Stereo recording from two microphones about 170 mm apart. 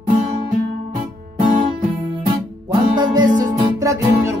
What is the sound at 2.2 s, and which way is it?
Music, 25° right (ahead or behind).